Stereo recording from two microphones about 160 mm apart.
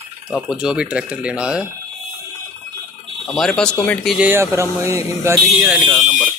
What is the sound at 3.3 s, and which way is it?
Speech, 5° left (ahead or behind).